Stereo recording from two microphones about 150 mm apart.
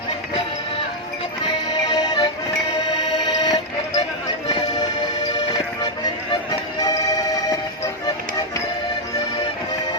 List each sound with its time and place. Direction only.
1.9 s music: 25° left (ahead or behind)
3.4 s music: 25° left (ahead or behind)